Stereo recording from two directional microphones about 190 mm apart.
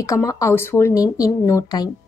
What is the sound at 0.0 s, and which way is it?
A woman's voice, 15° left (ahead or behind).